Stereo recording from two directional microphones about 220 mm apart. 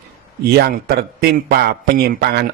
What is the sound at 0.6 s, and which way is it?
A man's voice, 45° right (ahead or behind).